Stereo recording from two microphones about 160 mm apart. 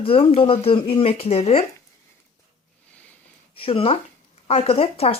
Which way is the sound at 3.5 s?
35° left (ahead or behind).